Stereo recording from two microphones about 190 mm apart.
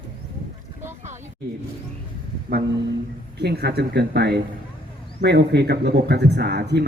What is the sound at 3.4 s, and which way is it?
Speech, 60° right (ahead or behind).